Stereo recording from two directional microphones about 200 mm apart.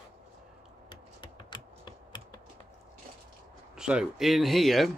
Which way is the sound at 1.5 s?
20° left (ahead or behind).